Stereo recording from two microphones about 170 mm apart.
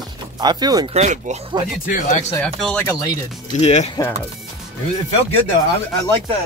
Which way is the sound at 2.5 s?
5° left (ahead or behind).